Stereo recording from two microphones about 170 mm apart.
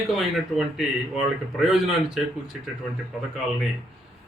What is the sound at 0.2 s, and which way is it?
A man's voice, centre (ahead or behind).